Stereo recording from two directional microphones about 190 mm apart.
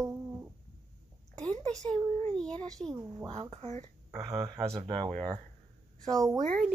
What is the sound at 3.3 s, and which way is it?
Speech, 35° right (ahead or behind).